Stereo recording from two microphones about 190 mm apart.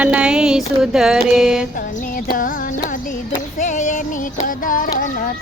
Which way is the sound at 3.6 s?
40° left (ahead or behind).